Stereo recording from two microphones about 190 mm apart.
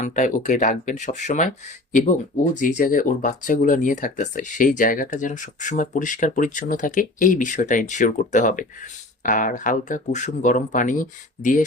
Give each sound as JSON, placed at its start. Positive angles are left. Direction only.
{"t": 0.0, "sound": "speech", "side_deg": 40}